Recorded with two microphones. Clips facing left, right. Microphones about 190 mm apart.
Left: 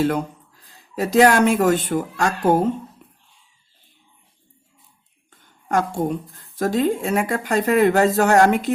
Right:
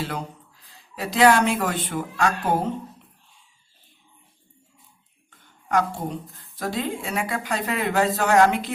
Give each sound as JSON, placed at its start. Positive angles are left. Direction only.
{"t": 0.0, "sound": "speech", "side_deg": 50}
{"t": 5.6, "sound": "a woman's voice", "side_deg": 45}